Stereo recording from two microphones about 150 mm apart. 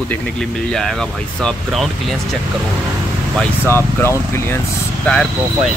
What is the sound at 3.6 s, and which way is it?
Speech, 15° left (ahead or behind).